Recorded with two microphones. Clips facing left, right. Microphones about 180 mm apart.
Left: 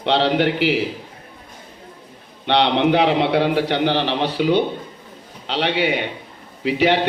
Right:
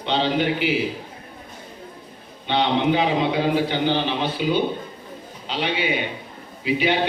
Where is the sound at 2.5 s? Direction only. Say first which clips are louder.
Left 3 dB; 75° left (ahead or behind).